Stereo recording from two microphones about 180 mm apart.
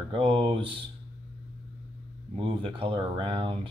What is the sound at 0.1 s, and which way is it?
Speech, 30° right (ahead or behind).